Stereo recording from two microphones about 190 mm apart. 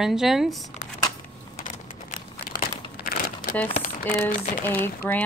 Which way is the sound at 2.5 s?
50° left (ahead or behind).